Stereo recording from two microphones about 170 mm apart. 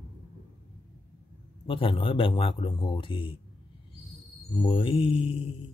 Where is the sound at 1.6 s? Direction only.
30° left (ahead or behind).